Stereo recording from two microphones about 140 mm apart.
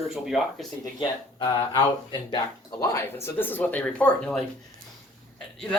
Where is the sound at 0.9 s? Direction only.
35° left (ahead or behind).